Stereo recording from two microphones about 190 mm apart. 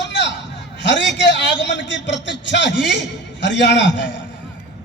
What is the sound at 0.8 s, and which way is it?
A man's voice, 70° left (ahead or behind).